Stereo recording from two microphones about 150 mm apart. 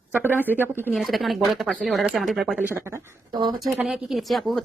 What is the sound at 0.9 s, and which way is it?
Speech, centre (ahead or behind).